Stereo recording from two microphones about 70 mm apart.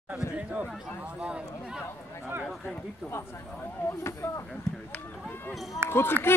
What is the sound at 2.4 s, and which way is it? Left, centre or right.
Speech, centre.